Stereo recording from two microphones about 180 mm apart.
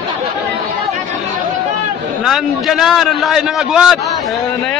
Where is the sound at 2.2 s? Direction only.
Centre (ahead or behind).